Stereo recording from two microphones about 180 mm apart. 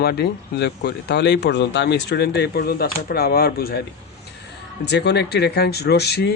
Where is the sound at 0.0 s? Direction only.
65° left (ahead or behind).